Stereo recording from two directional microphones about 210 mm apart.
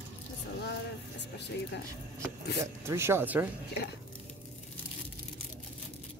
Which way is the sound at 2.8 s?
10° right (ahead or behind).